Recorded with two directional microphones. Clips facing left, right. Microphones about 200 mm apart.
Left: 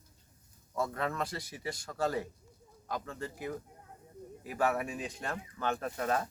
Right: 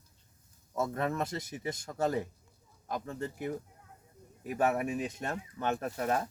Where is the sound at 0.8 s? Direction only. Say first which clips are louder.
Right 2 dB; 20° right (ahead or behind).